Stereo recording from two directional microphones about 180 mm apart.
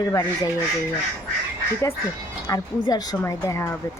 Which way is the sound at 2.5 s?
20° left (ahead or behind).